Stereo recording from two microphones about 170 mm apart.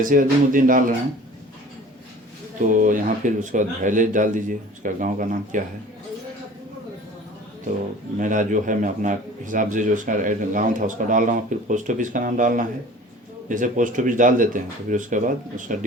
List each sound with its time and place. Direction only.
0.0 s a man's voice: 50° right (ahead or behind)
2.6 s a man's voice: 50° right (ahead or behind)
8.2 s a man's voice: 50° right (ahead or behind)